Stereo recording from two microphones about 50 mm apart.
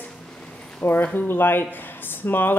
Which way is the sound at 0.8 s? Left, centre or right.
Left.